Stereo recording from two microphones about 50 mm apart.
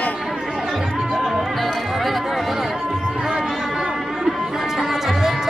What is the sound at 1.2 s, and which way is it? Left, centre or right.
Music, centre.